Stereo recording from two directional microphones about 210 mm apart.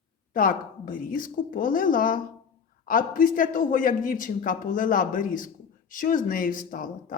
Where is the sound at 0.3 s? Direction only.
40° left (ahead or behind).